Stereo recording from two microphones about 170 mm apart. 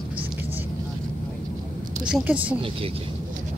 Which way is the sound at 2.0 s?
5° right (ahead or behind).